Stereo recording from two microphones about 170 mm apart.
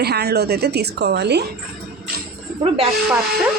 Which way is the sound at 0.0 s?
70° right (ahead or behind).